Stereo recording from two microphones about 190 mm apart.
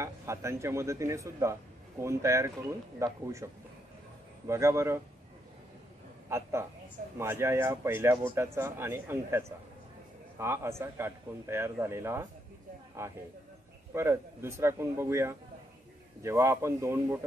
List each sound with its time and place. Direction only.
0.0 s a man's voice: 15° right (ahead or behind)
4.5 s a man's voice: 15° right (ahead or behind)
6.2 s a man's voice: 15° right (ahead or behind)